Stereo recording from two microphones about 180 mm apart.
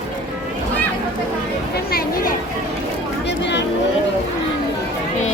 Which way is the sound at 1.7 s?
55° left (ahead or behind).